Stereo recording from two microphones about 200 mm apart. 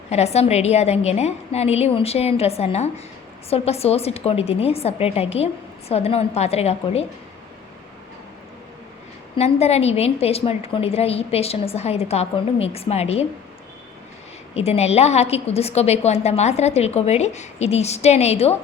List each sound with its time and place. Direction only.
0.1 s a woman's voice: 30° left (ahead or behind)
9.3 s a woman's voice: 30° left (ahead or behind)
14.5 s a woman's voice: 30° left (ahead or behind)